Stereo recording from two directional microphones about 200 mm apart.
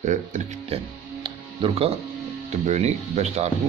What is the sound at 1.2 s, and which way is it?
Music, 25° right (ahead or behind).